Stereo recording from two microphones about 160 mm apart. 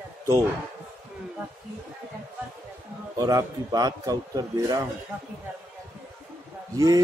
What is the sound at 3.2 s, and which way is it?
A man's voice, 20° right (ahead or behind).